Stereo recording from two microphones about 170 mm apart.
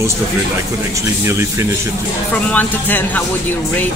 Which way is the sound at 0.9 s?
15° right (ahead or behind).